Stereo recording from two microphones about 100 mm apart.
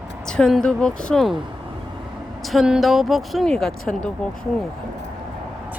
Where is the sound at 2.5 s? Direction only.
5° right (ahead or behind).